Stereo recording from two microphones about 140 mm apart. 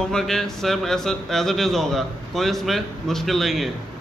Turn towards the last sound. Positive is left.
turn(degrees=0)  # may be behind; listen again after turning